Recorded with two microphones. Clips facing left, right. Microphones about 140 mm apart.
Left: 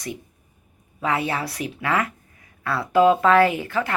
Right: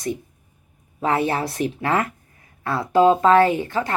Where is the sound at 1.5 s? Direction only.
40° right (ahead or behind).